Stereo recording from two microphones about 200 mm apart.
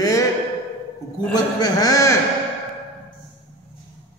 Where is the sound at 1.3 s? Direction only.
20° left (ahead or behind).